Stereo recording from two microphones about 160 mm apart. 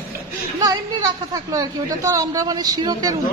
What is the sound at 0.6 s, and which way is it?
A woman's voice, 20° right (ahead or behind).